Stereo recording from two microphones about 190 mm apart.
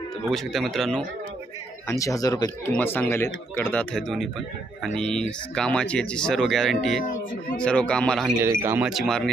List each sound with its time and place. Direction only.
0.3 s speech: centre (ahead or behind)
1.9 s speech: 15° left (ahead or behind)
8.4 s speech: 10° right (ahead or behind)